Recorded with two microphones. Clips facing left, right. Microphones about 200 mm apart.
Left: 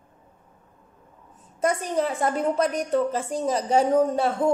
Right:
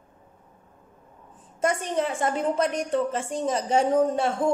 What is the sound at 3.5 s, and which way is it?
Speech, 35° left (ahead or behind).